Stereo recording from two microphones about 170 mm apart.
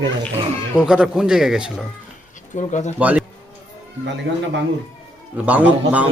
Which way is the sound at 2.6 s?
45° left (ahead or behind).